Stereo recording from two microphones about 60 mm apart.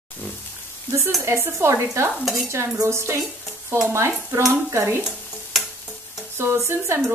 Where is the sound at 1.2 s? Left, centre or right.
Right.